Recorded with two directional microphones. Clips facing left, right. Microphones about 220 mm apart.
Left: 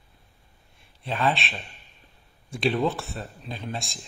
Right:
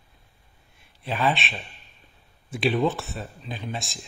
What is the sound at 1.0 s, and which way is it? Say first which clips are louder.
Speech: right 1 dB; 5° right (ahead or behind).